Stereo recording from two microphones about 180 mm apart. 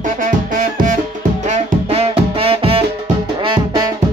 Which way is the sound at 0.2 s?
45° right (ahead or behind).